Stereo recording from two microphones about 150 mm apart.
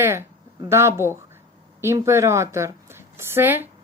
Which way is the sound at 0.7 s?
15° right (ahead or behind).